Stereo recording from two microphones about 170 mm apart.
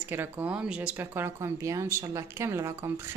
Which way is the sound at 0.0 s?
10° right (ahead or behind).